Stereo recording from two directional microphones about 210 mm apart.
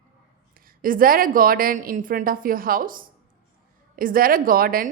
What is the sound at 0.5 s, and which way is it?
A woman's voice, 40° right (ahead or behind).